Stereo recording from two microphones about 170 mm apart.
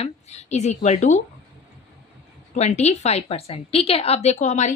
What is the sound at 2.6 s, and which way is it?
A woman's voice, 40° left (ahead or behind).